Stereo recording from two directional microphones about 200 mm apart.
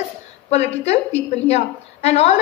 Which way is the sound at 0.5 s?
30° left (ahead or behind).